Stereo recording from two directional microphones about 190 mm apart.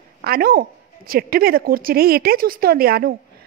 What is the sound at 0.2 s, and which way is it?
A woman's voice, 55° right (ahead or behind).